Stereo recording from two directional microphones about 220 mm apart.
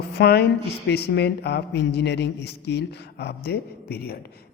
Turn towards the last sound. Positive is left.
turn(degrees=45)  # may be behind; listen again after turning